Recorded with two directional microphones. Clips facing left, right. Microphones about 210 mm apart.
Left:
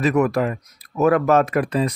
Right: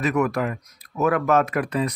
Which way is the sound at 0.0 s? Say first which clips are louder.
Left 4 dB; 30° left (ahead or behind).